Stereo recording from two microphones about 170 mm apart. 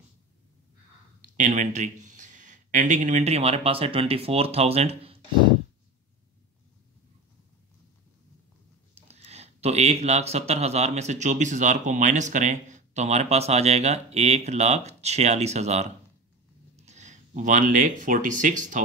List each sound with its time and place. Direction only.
1.2 s speech: 50° right (ahead or behind)
8.9 s speech: 40° right (ahead or behind)